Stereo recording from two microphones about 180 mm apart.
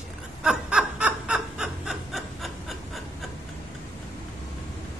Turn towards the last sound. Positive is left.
turn(degrees=0)  # may be behind; listen again after turning